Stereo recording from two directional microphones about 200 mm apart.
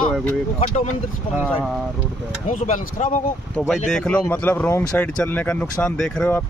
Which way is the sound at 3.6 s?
5° left (ahead or behind).